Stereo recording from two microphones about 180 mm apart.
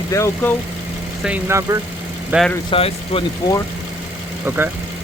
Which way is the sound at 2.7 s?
30° left (ahead or behind).